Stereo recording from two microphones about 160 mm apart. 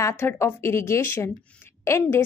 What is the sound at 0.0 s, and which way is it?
A woman's voice, 15° left (ahead or behind).